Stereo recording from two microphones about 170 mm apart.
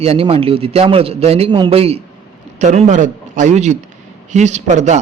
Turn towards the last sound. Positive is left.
turn(degrees=-40)  # may be behind; listen again after turning